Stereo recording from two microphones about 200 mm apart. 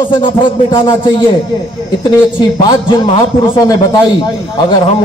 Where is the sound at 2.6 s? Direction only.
25° left (ahead or behind).